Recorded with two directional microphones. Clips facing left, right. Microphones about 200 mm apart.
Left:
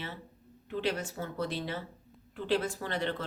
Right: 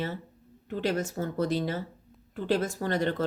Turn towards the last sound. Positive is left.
turn(degrees=-45)  # may be behind; listen again after turning